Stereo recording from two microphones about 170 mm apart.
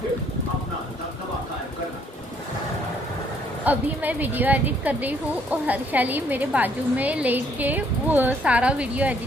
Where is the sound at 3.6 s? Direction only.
10° right (ahead or behind).